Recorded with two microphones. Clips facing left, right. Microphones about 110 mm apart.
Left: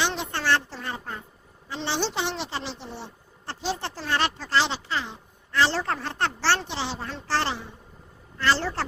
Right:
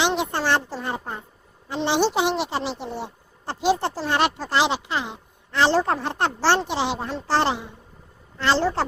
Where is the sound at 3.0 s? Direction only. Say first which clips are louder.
Right 6 dB; 15° right (ahead or behind).